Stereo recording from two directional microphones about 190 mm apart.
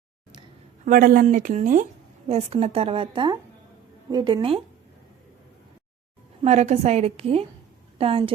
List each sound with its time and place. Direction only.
0.9 s speech: 50° right (ahead or behind)
2.2 s a woman's voice: 30° right (ahead or behind)
6.4 s a woman's voice: 35° right (ahead or behind)